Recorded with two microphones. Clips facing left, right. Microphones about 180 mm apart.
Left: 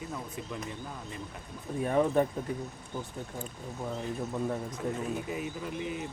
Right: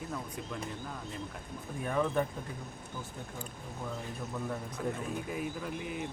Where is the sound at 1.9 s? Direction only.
30° left (ahead or behind).